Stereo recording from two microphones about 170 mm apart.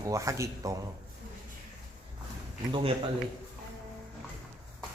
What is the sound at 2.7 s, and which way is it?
Speech, 30° right (ahead or behind).